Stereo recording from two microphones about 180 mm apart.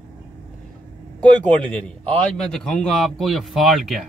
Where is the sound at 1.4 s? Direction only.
5° left (ahead or behind).